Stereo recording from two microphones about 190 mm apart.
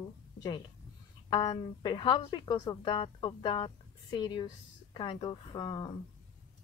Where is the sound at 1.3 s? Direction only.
25° left (ahead or behind).